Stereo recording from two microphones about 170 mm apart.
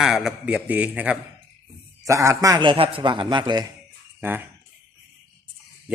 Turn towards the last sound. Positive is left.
turn(degrees=-10)  # may be behind; listen again after turning